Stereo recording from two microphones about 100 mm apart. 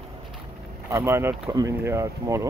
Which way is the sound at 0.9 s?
30° right (ahead or behind).